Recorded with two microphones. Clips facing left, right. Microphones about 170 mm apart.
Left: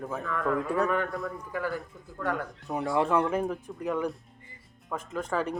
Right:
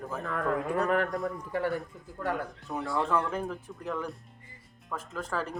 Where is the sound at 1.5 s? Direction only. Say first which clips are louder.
Right 2 dB; 30° right (ahead or behind).